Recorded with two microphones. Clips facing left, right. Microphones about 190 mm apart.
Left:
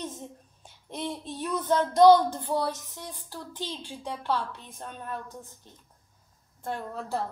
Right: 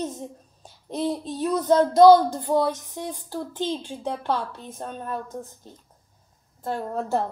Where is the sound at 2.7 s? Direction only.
15° right (ahead or behind).